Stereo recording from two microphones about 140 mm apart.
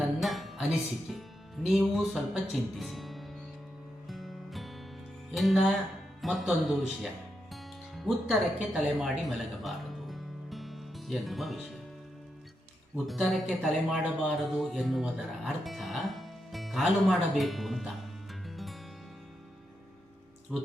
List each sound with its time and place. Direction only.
0.0 s music: centre (ahead or behind)
5.3 s speech: centre (ahead or behind)
7.5 s music: centre (ahead or behind)
13.1 s speech: centre (ahead or behind)
18.4 s music: centre (ahead or behind)
20.5 s speech: centre (ahead or behind)